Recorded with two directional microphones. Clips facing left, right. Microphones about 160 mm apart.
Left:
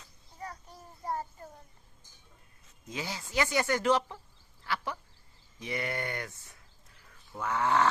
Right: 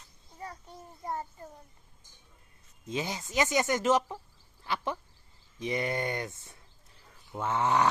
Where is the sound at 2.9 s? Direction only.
20° right (ahead or behind).